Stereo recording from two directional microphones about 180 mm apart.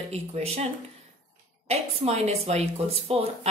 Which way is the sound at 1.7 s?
35° right (ahead or behind).